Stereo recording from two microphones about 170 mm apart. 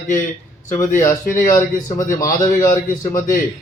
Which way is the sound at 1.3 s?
20° left (ahead or behind).